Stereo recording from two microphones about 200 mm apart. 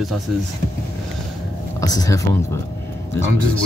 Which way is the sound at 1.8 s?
20° left (ahead or behind).